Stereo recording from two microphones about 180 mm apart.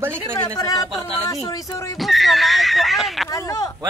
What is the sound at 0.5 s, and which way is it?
Speech, 20° left (ahead or behind).